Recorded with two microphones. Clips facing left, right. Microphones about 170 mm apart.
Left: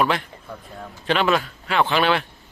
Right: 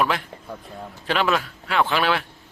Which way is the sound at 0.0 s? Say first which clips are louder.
Left 2 dB; centre (ahead or behind).